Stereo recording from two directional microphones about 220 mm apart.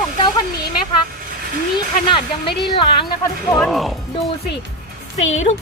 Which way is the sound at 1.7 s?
20° left (ahead or behind).